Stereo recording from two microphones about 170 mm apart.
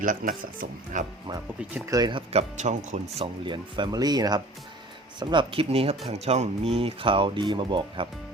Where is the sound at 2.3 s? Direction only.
40° right (ahead or behind).